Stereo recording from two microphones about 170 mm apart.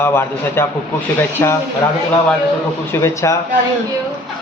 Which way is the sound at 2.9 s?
15° left (ahead or behind).